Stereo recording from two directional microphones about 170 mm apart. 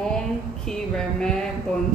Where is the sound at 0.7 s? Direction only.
5° left (ahead or behind).